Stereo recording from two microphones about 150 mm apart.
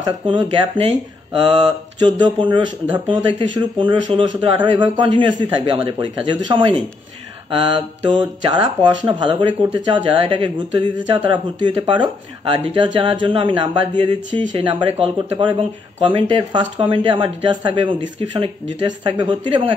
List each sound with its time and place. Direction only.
0.0 s speech: 30° right (ahead or behind)
8.1 s speech: 30° right (ahead or behind)